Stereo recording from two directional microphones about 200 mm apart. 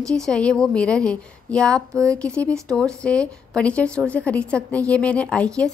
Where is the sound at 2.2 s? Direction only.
5° left (ahead or behind).